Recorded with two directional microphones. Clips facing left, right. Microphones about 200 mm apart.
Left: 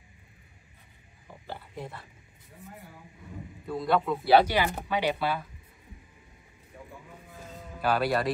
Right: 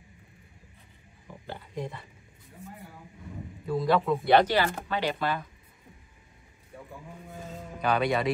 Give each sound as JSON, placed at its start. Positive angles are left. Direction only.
{"t": 1.8, "sound": "speech", "side_deg": 5}
{"t": 3.6, "sound": "speech", "side_deg": 0}
{"t": 7.8, "sound": "speech", "side_deg": 5}